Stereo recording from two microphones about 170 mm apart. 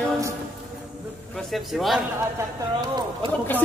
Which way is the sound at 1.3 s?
Centre (ahead or behind).